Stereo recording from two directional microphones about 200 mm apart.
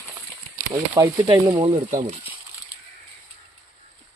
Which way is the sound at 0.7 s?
20° right (ahead or behind).